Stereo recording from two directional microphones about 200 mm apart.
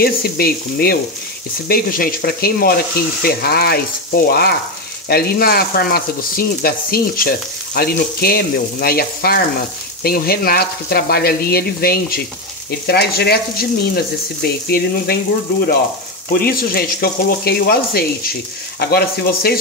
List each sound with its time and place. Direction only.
0.0 s frying: 50° left (ahead or behind)
16.3 s frying: 50° left (ahead or behind)